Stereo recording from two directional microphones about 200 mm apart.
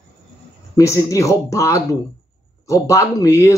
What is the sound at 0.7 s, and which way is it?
Speech, 15° left (ahead or behind).